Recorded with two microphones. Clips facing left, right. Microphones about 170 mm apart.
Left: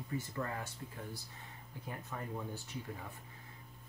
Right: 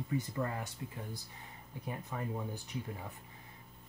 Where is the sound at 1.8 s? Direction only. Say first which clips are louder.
Right 4 dB; 15° right (ahead or behind).